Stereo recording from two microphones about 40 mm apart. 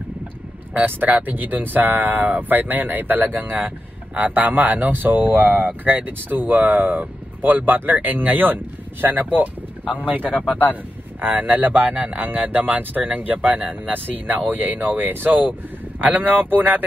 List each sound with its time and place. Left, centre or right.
0.7 s speech: right
11.9 s speech: right
12.2 s speech: right
13.9 s speech: right